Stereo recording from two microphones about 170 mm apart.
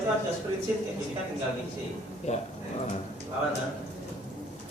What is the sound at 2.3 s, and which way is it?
Speech, 40° left (ahead or behind).